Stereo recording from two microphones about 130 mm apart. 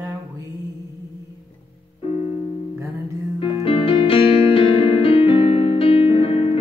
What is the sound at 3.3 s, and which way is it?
Music, 45° left (ahead or behind).